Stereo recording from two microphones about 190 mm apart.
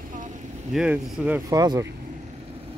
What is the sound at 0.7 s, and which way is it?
Speech, 5° right (ahead or behind).